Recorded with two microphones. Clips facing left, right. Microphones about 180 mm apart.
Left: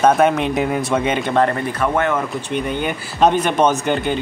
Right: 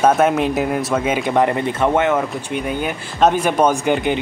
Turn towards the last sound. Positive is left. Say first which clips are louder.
# right 1 dB
turn(degrees=-15)  # may be behind; listen again after turning